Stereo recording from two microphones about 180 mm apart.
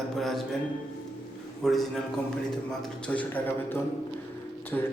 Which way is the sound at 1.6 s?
Centre (ahead or behind).